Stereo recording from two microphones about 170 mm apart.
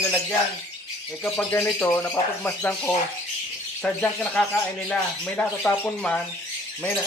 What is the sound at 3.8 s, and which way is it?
Speech, 5° left (ahead or behind).